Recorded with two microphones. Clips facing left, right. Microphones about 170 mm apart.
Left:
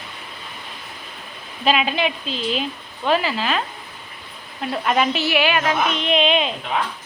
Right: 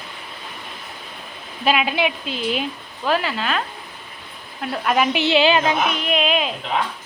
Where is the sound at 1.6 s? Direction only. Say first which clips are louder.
Even; 5° right (ahead or behind).